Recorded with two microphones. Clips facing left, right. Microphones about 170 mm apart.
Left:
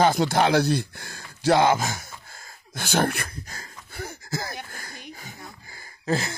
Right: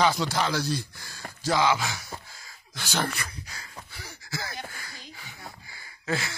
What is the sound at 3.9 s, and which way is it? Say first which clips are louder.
Wheeze: left 8 dB; 50° left (ahead or behind).